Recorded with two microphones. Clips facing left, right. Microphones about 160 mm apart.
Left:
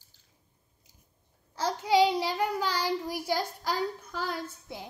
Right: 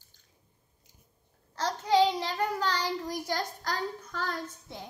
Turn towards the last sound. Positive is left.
turn(degrees=10)  # may be behind; listen again after turning